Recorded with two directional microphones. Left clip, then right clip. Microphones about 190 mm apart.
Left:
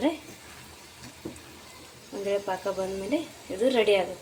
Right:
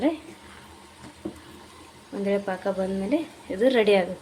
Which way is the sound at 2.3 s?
20° right (ahead or behind).